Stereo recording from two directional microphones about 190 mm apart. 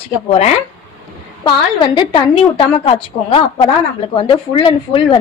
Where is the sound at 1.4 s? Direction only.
25° left (ahead or behind).